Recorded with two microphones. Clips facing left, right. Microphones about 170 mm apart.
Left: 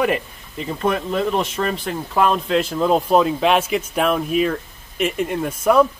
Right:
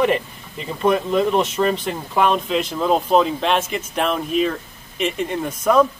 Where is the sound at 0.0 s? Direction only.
Centre (ahead or behind).